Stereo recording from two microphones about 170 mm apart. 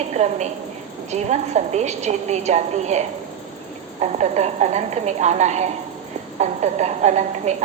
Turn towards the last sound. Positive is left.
turn(degrees=-40)  # may be behind; listen again after turning